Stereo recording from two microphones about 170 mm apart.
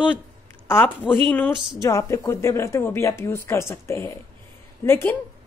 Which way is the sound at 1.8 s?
20° left (ahead or behind).